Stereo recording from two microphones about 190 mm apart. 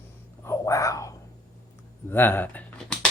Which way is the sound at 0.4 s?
15° left (ahead or behind).